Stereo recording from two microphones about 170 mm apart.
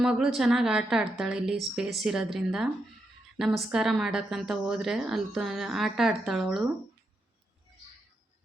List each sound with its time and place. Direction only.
0.0 s a woman's voice: 5° right (ahead or behind)